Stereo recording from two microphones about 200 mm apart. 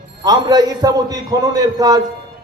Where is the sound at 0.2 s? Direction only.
20° right (ahead or behind).